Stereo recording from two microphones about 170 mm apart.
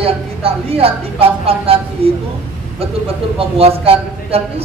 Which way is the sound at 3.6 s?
35° right (ahead or behind).